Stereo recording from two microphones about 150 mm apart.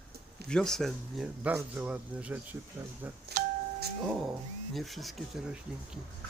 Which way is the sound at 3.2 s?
90° right.